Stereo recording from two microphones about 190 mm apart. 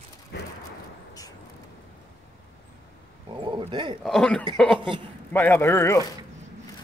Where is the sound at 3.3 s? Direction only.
25° right (ahead or behind).